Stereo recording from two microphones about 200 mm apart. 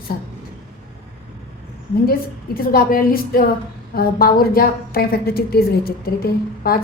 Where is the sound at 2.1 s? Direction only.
50° left (ahead or behind).